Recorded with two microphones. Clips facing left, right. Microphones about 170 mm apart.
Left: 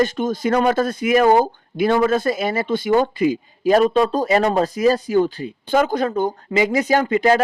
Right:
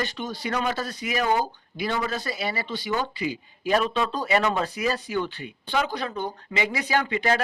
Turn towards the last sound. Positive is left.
turn(degrees=45)  # may be behind; listen again after turning